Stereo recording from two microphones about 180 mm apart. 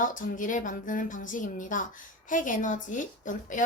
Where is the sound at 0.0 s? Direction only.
45° left (ahead or behind).